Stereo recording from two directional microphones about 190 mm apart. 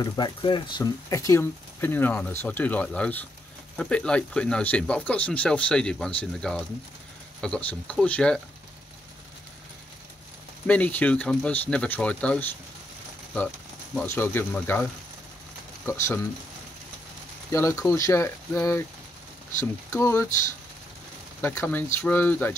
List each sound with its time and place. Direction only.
0.0 s speech: 20° left (ahead or behind)
10.7 s speech: 10° left (ahead or behind)
13.9 s speech: 10° left (ahead or behind)
15.9 s speech: 15° left (ahead or behind)
17.5 s speech: 15° left (ahead or behind)
21.4 s speech: 10° left (ahead or behind)